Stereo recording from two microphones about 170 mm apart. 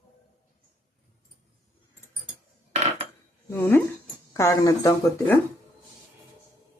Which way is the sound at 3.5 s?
10° left (ahead or behind).